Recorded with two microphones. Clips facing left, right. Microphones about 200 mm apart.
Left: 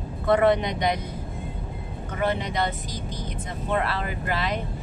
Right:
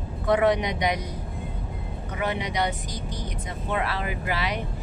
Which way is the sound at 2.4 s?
15° right (ahead or behind).